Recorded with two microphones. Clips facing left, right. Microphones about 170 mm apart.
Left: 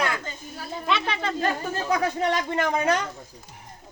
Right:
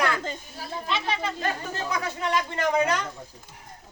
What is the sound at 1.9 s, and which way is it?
Speech, 45° left (ahead or behind).